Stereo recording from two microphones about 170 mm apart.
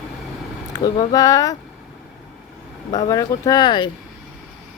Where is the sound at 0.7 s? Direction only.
20° left (ahead or behind).